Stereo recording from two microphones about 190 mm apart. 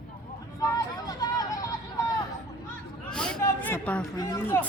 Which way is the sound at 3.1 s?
5° left (ahead or behind).